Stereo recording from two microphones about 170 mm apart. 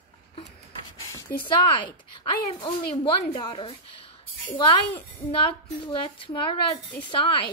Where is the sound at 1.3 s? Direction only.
30° left (ahead or behind).